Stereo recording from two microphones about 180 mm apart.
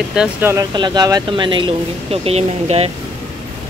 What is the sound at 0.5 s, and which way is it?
Speech, 25° right (ahead or behind).